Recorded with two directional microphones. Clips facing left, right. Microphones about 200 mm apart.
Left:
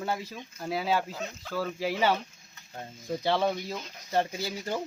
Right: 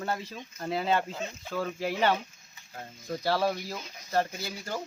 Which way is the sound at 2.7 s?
15° left (ahead or behind).